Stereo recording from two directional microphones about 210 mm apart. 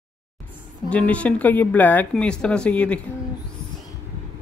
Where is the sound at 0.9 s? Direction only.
5° left (ahead or behind).